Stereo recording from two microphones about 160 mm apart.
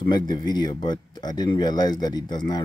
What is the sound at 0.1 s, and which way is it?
Speech, 25° left (ahead or behind).